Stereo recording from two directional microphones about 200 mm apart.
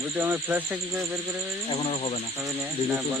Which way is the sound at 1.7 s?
30° left (ahead or behind).